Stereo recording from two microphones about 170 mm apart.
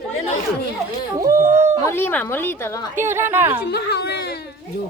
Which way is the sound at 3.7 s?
70° left (ahead or behind).